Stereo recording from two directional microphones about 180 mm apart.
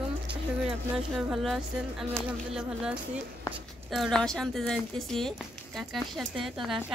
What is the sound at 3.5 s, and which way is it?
Speech, 20° left (ahead or behind).